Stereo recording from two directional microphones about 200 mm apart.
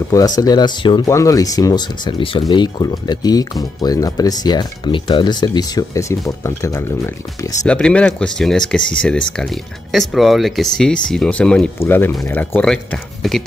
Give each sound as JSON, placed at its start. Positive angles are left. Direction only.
{"t": 0.4, "sound": "speech", "side_deg": 20}